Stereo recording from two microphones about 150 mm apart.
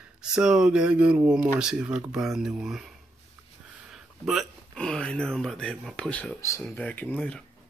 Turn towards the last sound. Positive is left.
turn(degrees=5)  # may be behind; listen again after turning